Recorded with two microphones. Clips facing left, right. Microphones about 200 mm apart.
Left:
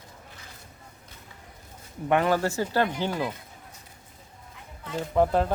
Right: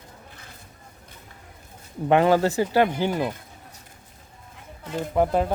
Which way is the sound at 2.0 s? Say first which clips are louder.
Right 5 dB; 25° right (ahead or behind).